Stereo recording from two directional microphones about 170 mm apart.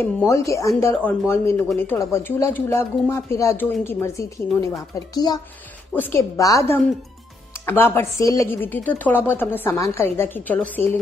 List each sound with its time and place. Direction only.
0.0 s speech: 15° left (ahead or behind)